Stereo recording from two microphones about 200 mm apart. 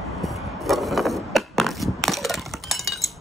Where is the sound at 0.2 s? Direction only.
Centre (ahead or behind).